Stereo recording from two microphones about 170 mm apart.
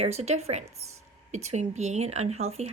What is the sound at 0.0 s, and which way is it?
Speech, 40° right (ahead or behind).